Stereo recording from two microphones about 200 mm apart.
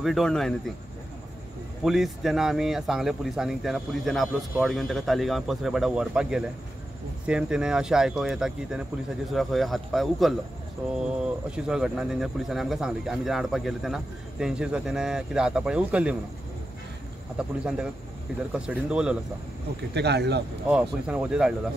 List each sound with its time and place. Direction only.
0.0 s speech: centre (ahead or behind)
1.8 s speech: centre (ahead or behind)
11.5 s speech: 5° right (ahead or behind)
17.4 s speech: 5° right (ahead or behind)
19.9 s speech: 55° right (ahead or behind)
20.6 s speech: 5° right (ahead or behind)